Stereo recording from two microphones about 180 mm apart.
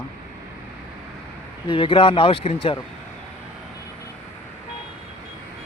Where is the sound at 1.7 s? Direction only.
30° left (ahead or behind).